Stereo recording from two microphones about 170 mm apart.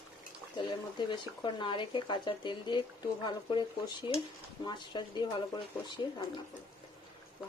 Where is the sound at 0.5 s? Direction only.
25° left (ahead or behind).